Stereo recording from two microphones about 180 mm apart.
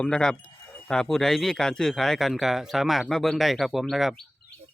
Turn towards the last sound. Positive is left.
turn(degrees=0)  # may be behind; listen again after turning